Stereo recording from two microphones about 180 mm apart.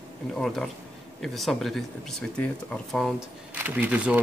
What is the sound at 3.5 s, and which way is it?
Speech, 10° right (ahead or behind).